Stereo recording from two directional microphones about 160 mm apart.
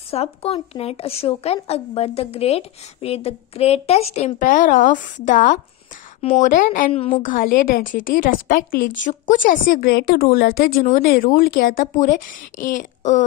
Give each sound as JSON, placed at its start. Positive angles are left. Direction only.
{"t": 0.1, "sound": "a woman's voice", "side_deg": 40}
{"t": 6.9, "sound": "speech", "side_deg": 40}
{"t": 7.2, "sound": "a woman's voice", "side_deg": 60}